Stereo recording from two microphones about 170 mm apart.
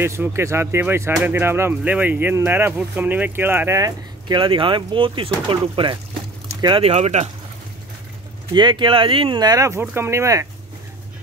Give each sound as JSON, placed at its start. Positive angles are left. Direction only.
{"t": 0.0, "sound": "speech", "side_deg": -15}
{"t": 8.5, "sound": "speech", "side_deg": -30}